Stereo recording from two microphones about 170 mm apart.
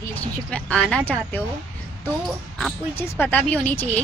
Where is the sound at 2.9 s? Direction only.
15° left (ahead or behind).